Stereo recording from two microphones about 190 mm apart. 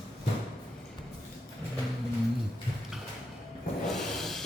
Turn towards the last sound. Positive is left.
turn(degrees=0)  # may be behind; listen again after turning